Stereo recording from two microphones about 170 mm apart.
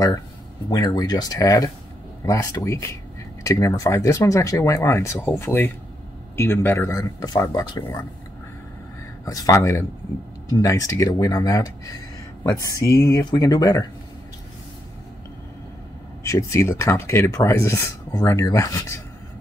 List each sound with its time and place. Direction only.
0.7 s speech: 20° left (ahead or behind)
9.2 s speech: 20° left (ahead or behind)
16.3 s speech: 20° left (ahead or behind)